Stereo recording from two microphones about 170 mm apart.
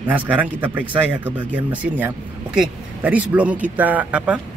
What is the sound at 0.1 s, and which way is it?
Speech, 10° right (ahead or behind).